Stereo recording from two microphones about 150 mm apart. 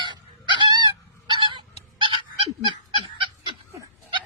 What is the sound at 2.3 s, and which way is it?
Goose, 35° right (ahead or behind).